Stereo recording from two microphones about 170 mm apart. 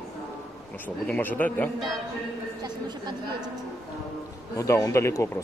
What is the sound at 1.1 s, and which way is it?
Speech, 10° left (ahead or behind).